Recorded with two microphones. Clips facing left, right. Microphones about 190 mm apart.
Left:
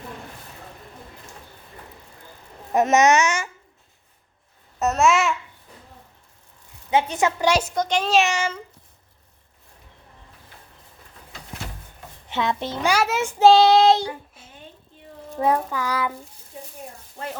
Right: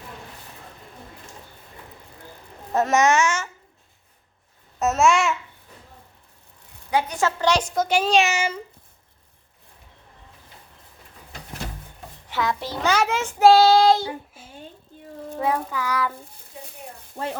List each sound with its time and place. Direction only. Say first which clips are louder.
2.7 s a child's voice: left 2 dB; 20° left (ahead or behind)
4.8 s babbling: even; centre (ahead or behind)
6.9 s a woman's voice: left 2 dB; 20° left (ahead or behind)
7.8 s speech: right 1 dB; 5° right (ahead or behind)
12.3 s a child's voice: left 1 dB; 25° left (ahead or behind)
12.9 s a woman's voice: even; 10° left (ahead or behind)
13.4 s a child's voice: even; 20° left (ahead or behind)
15.4 s child singing: left 3 dB; 40° left (ahead or behind)
17.2 s speech: right 4 dB; 50° right (ahead or behind)